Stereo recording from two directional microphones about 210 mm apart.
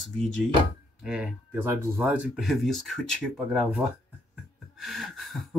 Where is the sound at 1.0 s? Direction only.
5° right (ahead or behind).